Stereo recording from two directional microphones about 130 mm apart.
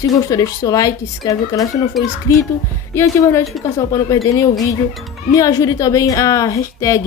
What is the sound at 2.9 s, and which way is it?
A woman's voice, 20° left (ahead or behind).